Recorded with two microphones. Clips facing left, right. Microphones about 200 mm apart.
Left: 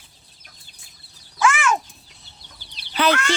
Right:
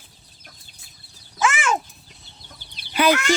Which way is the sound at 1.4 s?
25° right (ahead or behind).